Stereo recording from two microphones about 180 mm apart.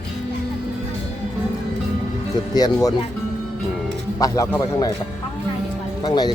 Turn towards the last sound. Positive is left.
turn(degrees=20)  # may be behind; listen again after turning